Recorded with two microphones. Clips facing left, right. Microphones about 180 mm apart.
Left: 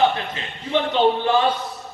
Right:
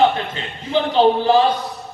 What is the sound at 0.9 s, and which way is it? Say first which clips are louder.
Speech: right 5 dB; 35° right (ahead or behind).